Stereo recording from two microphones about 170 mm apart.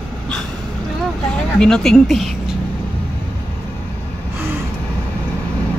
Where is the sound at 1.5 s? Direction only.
5° left (ahead or behind).